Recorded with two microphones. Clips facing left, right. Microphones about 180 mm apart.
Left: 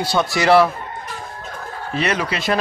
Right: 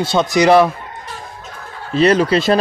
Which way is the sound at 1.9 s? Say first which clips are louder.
Right 9 dB; 30° right (ahead or behind).